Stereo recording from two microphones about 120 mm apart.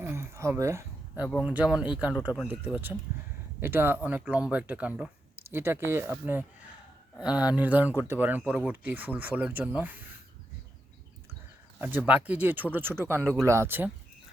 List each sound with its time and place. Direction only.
0.0 s a sound: 20° right (ahead or behind)
1.5 s speech: 10° right (ahead or behind)
5.4 s speech: 20° right (ahead or behind)
11.8 s speech: 15° right (ahead or behind)